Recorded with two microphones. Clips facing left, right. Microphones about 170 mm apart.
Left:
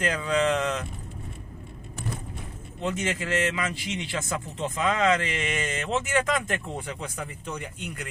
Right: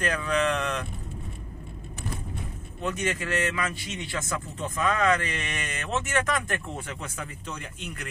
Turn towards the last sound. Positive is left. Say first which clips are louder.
# left 3 dB
turn(degrees=15)  # may be behind; listen again after turning